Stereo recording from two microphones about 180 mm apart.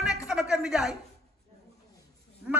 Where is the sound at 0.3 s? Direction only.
5° right (ahead or behind).